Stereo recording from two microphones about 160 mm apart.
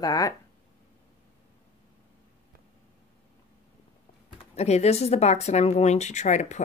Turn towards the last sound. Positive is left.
turn(degrees=50)  # may be behind; listen again after turning